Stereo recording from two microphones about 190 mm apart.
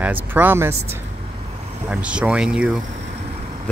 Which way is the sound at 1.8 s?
10° right (ahead or behind).